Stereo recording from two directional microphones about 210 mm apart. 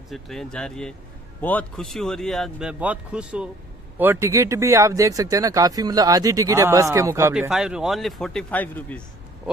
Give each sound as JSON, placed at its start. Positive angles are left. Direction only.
{"t": 0.1, "sound": "speech", "side_deg": 0}
{"t": 7.3, "sound": "speech", "side_deg": -5}